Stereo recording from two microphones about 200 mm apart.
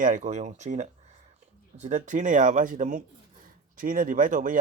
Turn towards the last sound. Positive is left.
turn(degrees=-40)  # may be behind; listen again after turning